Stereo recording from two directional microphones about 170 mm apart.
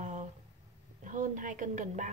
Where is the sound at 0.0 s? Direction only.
45° right (ahead or behind).